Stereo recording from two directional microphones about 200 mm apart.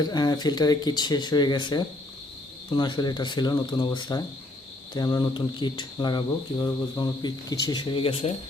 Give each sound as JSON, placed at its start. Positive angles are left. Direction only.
{"t": 0.0, "sound": "speech", "side_deg": 20}